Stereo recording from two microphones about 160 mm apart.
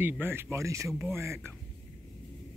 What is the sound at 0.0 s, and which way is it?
Speech, 15° right (ahead or behind).